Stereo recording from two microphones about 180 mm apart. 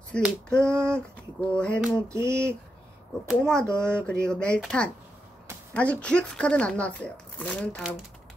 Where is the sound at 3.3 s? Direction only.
5° left (ahead or behind).